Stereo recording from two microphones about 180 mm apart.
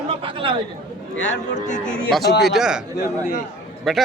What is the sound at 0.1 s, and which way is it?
Chatter, 30° right (ahead or behind).